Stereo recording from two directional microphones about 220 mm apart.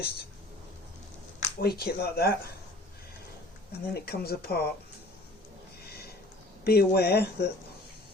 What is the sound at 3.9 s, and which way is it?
Speech, 45° left (ahead or behind).